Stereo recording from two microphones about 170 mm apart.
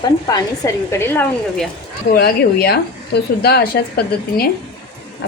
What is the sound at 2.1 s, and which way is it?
A woman's voice, 70° left (ahead or behind).